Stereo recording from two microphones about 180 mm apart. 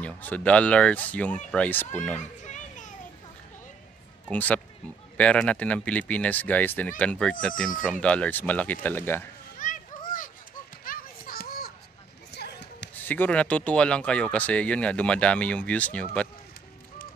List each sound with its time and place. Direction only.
0.0 s speech: 10° left (ahead or behind)
2.4 s children playing: 45° left (ahead or behind)
4.3 s speech: 10° left (ahead or behind)
9.6 s children playing: 50° left (ahead or behind)
12.3 s basketball bounce: 65° left (ahead or behind)
13.0 s speech: 10° left (ahead or behind)